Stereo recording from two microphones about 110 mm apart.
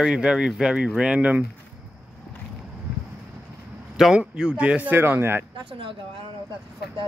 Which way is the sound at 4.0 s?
5° right (ahead or behind).